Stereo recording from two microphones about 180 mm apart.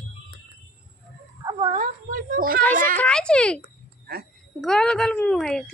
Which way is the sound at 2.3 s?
50° right (ahead or behind).